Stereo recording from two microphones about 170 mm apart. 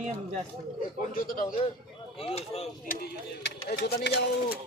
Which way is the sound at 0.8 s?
55° left (ahead or behind).